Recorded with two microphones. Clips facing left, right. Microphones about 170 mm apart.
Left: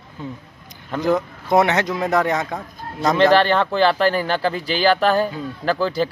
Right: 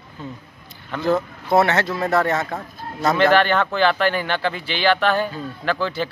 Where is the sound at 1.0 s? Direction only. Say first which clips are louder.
Left 1 dB; 15° left (ahead or behind).